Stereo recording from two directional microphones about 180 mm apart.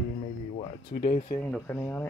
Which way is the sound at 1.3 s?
10° left (ahead or behind).